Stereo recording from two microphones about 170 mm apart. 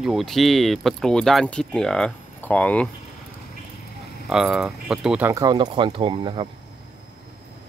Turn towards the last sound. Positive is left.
turn(degrees=-30)  # may be behind; listen again after turning